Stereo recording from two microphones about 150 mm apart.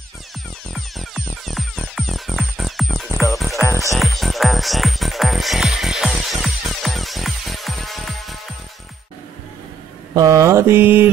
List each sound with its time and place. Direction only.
0.7 s music: centre (ahead or behind)
10.1 s mantra: 25° right (ahead or behind)